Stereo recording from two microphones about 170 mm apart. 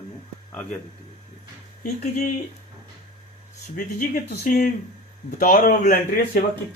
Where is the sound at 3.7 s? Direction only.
50° left (ahead or behind).